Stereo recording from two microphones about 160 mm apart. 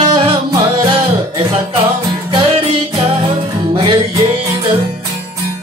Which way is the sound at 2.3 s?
35° right (ahead or behind).